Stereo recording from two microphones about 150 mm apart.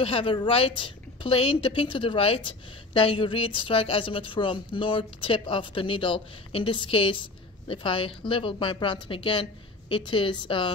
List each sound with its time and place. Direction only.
0.0 s a woman's voice: 35° left (ahead or behind)